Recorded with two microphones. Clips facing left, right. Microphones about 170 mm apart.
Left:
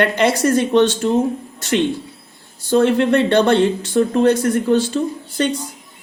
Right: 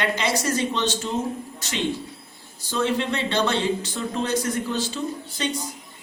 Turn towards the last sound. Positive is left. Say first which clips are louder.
# left 8 dB
turn(degrees=60)  # may be behind; listen again after turning